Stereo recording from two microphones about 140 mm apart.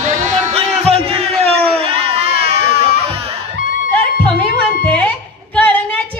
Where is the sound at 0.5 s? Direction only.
45° right (ahead or behind).